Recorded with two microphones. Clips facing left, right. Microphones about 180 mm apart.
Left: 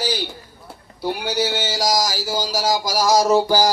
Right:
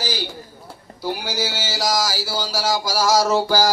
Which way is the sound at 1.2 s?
60° left (ahead or behind).